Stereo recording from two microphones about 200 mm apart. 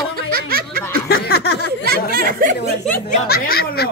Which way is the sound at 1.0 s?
55° left (ahead or behind).